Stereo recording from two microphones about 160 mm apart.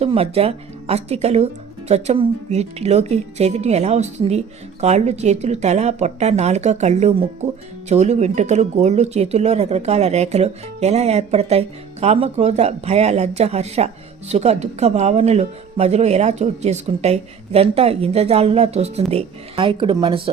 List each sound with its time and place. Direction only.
0.0 s speech: 40° right (ahead or behind)